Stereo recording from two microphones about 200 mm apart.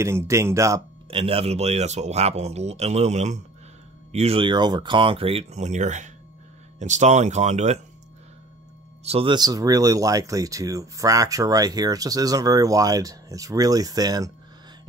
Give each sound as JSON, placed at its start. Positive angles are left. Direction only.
{"t": 0.0, "sound": "speech", "side_deg": -15}
{"t": 1.1, "sound": "speech", "side_deg": -30}
{"t": 9.0, "sound": "speech", "side_deg": -30}